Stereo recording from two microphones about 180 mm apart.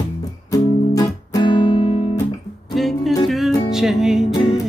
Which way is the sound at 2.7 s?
Centre (ahead or behind).